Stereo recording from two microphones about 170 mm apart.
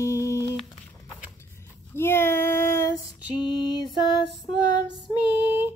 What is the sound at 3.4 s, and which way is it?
Music, 25° left (ahead or behind).